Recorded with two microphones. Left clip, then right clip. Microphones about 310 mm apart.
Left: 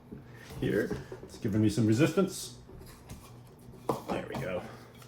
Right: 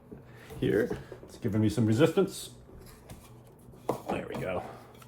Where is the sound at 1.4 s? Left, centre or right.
Centre.